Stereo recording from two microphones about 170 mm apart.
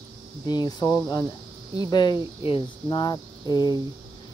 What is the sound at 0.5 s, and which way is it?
Speech, 25° left (ahead or behind).